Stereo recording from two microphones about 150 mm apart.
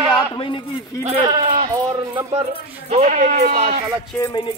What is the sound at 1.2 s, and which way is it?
Speech, 30° right (ahead or behind).